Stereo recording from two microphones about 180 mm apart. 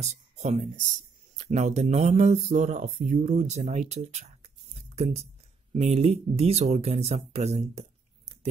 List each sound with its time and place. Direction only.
0.0 s speech: 40° right (ahead or behind)